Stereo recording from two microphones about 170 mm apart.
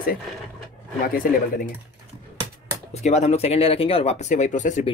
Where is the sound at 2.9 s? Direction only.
40° left (ahead or behind).